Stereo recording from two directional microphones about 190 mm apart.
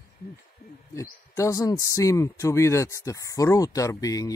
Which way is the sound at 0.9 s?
15° left (ahead or behind).